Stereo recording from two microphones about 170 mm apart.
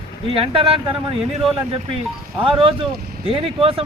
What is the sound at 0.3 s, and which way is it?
Speech, 30° right (ahead or behind).